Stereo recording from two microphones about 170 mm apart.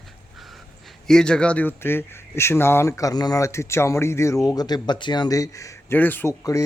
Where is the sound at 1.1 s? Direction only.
5° left (ahead or behind).